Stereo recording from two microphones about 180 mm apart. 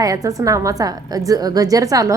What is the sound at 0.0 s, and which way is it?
A woman's voice, 20° right (ahead or behind).